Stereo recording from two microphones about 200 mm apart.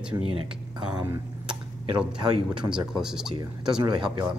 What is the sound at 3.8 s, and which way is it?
Speech, 25° right (ahead or behind).